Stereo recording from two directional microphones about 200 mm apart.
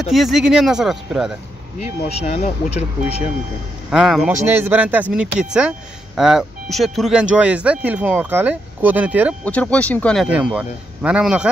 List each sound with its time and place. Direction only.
0.0 s speech: centre (ahead or behind)
1.8 s speech: 35° left (ahead or behind)
3.9 s speech: centre (ahead or behind)
9.4 s speech: 5° left (ahead or behind)
10.2 s speech: 5° right (ahead or behind)